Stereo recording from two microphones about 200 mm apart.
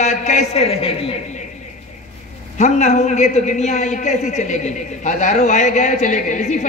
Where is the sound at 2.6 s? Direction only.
35° left (ahead or behind).